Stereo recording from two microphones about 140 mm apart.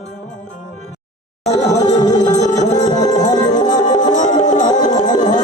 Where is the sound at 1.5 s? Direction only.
55° left (ahead or behind).